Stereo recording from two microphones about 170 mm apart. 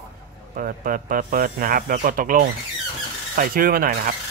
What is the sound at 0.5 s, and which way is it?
Speech, 55° right (ahead or behind).